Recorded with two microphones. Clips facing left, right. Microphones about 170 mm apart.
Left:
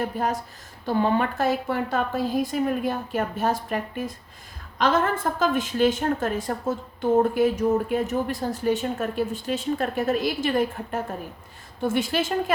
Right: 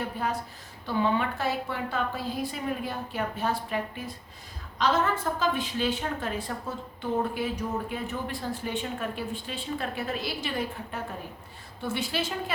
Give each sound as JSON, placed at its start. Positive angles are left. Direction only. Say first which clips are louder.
{"t": 0.0, "sound": "a woman's voice", "louder": "left 5 dB", "side_deg": 45}